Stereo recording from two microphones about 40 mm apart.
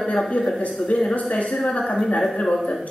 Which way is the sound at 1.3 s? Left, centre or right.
Left.